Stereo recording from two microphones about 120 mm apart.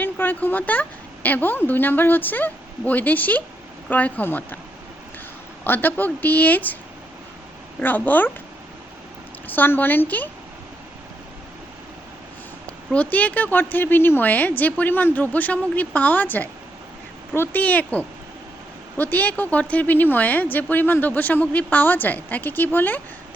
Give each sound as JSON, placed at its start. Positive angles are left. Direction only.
{"t": 0.0, "sound": "a woman's voice", "side_deg": 15}
{"t": 5.6, "sound": "a woman's voice", "side_deg": 15}
{"t": 7.8, "sound": "a woman's voice", "side_deg": 15}
{"t": 9.6, "sound": "a woman's voice", "side_deg": 15}
{"t": 12.6, "sound": "a woman's voice", "side_deg": 10}